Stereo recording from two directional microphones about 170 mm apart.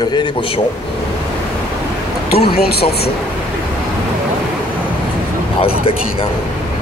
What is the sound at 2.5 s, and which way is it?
Speech, 70° left (ahead or behind).